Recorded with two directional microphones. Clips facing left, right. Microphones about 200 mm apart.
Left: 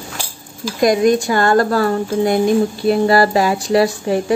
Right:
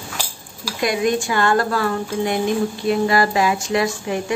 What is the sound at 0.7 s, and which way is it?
Speech, 40° left (ahead or behind).